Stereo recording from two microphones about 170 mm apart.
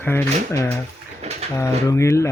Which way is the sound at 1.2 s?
40° right (ahead or behind).